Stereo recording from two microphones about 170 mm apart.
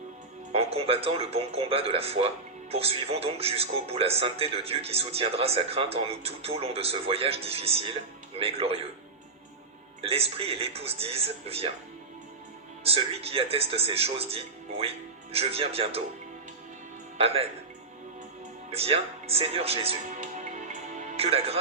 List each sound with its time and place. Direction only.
0.5 s speech: 35° right (ahead or behind)
10.0 s speech: 35° right (ahead or behind)
12.8 s speech: 35° right (ahead or behind)
17.2 s speech: 35° right (ahead or behind)
18.7 s speech: 35° right (ahead or behind)